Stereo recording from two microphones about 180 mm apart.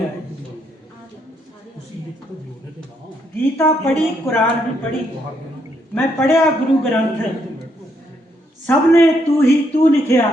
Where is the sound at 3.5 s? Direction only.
15° left (ahead or behind).